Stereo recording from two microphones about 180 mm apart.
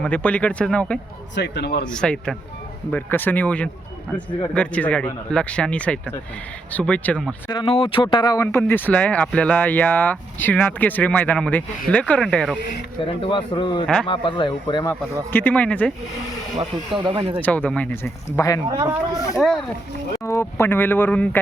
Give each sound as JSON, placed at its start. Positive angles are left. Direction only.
{"t": 0.0, "sound": "speech", "side_deg": 10}
{"t": 1.4, "sound": "a man's voice", "side_deg": 65}
{"t": 1.9, "sound": "speech", "side_deg": 5}
{"t": 7.5, "sound": "speech", "side_deg": 30}
{"t": 13.1, "sound": "a man's voice", "side_deg": 30}
{"t": 13.8, "sound": "speech", "side_deg": 5}
{"t": 14.1, "sound": "a man's voice", "side_deg": 30}
{"t": 14.8, "sound": "speech", "side_deg": 10}
{"t": 17.0, "sound": "speech", "side_deg": -30}
{"t": 17.4, "sound": "a man's voice", "side_deg": 10}